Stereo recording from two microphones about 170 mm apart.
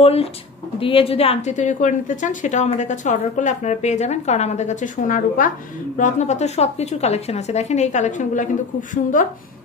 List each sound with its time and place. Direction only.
0.0 s a woman's voice: 35° left (ahead or behind)